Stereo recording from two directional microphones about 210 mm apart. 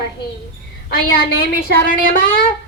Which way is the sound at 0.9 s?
45° left (ahead or behind).